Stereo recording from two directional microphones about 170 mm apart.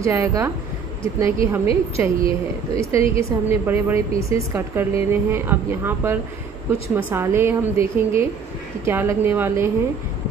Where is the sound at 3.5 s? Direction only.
15° right (ahead or behind).